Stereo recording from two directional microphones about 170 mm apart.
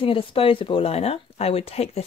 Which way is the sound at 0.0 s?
30° left (ahead or behind).